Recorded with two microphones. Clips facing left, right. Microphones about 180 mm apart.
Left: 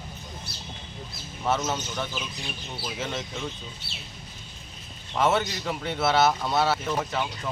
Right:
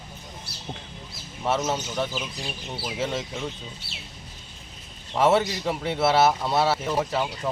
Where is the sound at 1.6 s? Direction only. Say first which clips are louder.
Right 3 dB; 30° right (ahead or behind).